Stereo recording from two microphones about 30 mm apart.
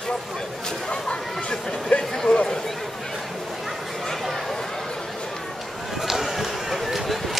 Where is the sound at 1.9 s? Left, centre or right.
Left.